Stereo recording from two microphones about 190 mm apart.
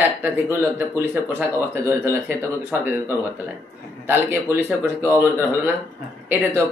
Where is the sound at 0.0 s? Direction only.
10° right (ahead or behind).